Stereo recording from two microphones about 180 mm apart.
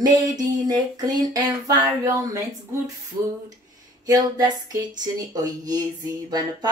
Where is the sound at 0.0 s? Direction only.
20° right (ahead or behind).